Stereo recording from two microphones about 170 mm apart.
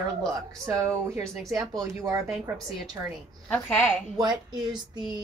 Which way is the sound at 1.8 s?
20° right (ahead or behind).